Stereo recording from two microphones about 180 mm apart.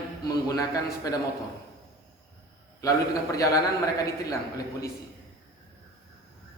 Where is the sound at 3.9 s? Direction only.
15° left (ahead or behind).